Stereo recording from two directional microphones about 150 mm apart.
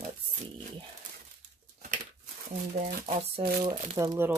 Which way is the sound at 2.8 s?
65° right (ahead or behind).